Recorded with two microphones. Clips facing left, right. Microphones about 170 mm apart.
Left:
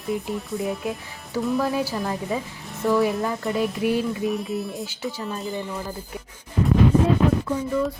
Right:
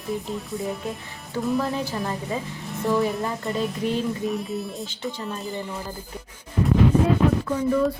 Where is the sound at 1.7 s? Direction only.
10° left (ahead or behind).